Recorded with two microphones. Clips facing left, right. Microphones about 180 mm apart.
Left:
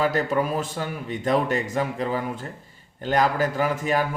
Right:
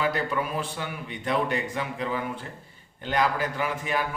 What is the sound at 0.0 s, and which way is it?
A man's voice, 45° left (ahead or behind).